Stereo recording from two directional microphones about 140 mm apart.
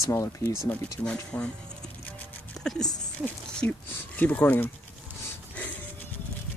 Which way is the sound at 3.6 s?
15° left (ahead or behind).